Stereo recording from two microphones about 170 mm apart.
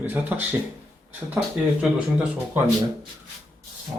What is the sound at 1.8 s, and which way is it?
Speech, 5° right (ahead or behind).